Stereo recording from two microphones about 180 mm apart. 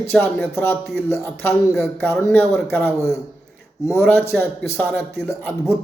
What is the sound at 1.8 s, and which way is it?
Speech, 15° left (ahead or behind).